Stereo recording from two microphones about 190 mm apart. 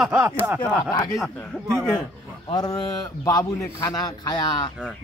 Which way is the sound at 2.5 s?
20° left (ahead or behind).